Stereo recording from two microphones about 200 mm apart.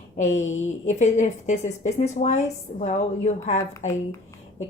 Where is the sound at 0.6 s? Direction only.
35° left (ahead or behind).